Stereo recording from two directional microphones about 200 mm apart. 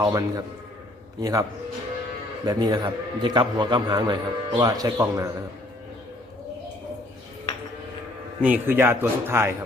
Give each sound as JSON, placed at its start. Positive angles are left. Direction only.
{"t": 0.0, "sound": "a man's voice", "side_deg": -15}
{"t": 2.5, "sound": "a man's voice", "side_deg": -20}
{"t": 8.4, "sound": "a man's voice", "side_deg": -10}